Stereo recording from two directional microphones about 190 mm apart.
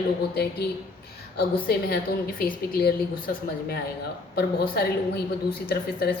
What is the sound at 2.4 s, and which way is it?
A woman's voice, 50° left (ahead or behind).